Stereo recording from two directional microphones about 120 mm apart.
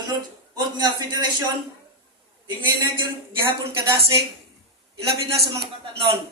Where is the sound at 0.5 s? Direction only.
35° right (ahead or behind).